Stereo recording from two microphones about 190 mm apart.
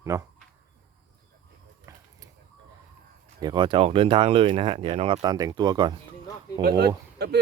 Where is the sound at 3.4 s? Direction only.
25° right (ahead or behind).